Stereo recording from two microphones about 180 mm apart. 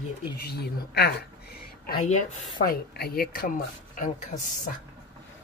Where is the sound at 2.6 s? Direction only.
60° left (ahead or behind).